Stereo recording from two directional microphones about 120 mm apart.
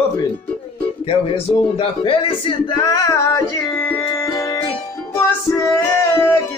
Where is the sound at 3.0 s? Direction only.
25° left (ahead or behind).